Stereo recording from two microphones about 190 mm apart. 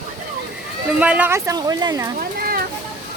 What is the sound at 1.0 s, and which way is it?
Speech, 5° right (ahead or behind).